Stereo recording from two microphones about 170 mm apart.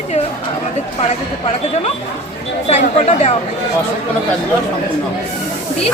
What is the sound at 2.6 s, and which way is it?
Speech, 40° left (ahead or behind).